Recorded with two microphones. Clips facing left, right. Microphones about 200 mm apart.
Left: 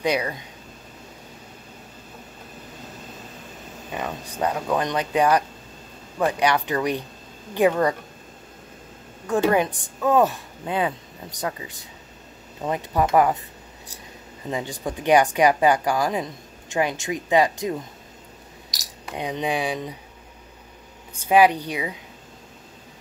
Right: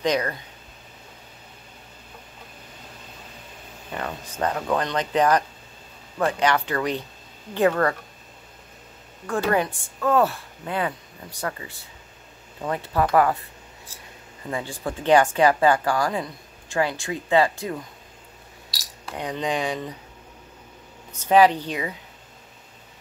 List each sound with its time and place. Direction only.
0.0 s a woman's voice: 10° left (ahead or behind)
3.9 s a woman's voice: 15° left (ahead or behind)
9.3 s a woman's voice: 20° left (ahead or behind)
14.5 s a woman's voice: 15° left (ahead or behind)
21.2 s a woman's voice: 10° left (ahead or behind)